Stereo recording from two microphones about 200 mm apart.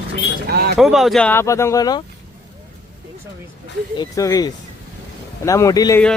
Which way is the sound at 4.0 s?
15° left (ahead or behind).